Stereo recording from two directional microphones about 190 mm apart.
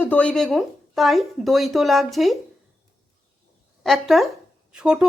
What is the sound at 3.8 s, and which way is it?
A woman's voice, centre (ahead or behind).